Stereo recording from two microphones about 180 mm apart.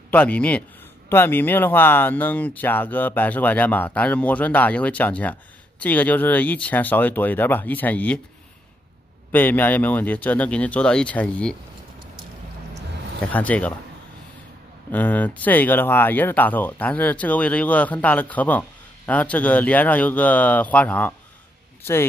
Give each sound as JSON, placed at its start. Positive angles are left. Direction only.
{"t": 0.1, "sound": "speech", "side_deg": 5}
{"t": 9.3, "sound": "speech", "side_deg": 10}
{"t": 13.3, "sound": "speech", "side_deg": 10}
{"t": 14.9, "sound": "speech", "side_deg": 10}